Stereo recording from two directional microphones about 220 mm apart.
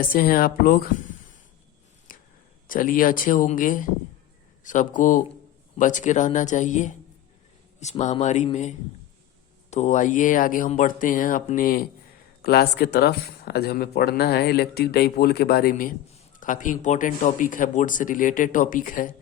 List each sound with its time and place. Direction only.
0.0 s speech: 40° left (ahead or behind)
2.1 s whispering: 40° left (ahead or behind)
2.6 s speech: 40° left (ahead or behind)